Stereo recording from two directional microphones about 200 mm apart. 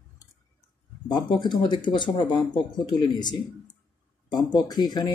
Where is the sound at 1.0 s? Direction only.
20° left (ahead or behind).